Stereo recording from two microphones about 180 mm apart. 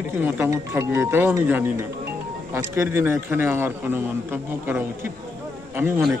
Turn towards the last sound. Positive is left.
turn(degrees=-15)  # may be behind; listen again after turning